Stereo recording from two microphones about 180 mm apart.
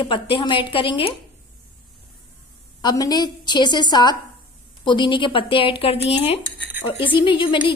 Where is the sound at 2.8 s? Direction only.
20° left (ahead or behind).